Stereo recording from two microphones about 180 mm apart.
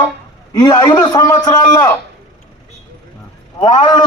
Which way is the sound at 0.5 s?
20° left (ahead or behind).